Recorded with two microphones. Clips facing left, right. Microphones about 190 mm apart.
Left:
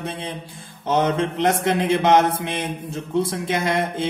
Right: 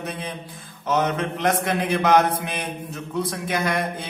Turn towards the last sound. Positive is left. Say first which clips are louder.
# left 3 dB
turn(degrees=25)  # may be behind; listen again after turning